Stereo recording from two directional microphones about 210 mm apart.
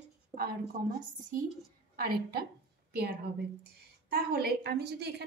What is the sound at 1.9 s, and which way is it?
A woman's voice, 45° right (ahead or behind).